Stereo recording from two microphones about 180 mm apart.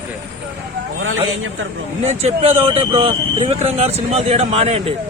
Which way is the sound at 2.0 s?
35° right (ahead or behind).